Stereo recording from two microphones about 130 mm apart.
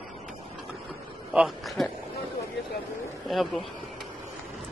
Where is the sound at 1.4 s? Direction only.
Centre (ahead or behind).